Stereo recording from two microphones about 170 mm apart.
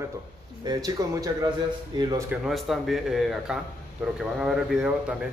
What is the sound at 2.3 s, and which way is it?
A man's voice, centre (ahead or behind).